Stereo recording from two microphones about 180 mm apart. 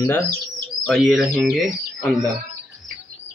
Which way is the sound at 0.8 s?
Centre (ahead or behind).